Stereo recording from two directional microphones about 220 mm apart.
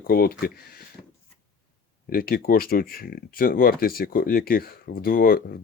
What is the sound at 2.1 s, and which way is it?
Speech, 40° left (ahead or behind).